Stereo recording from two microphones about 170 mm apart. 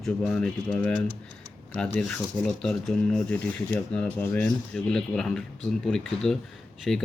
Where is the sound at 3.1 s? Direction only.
10° left (ahead or behind).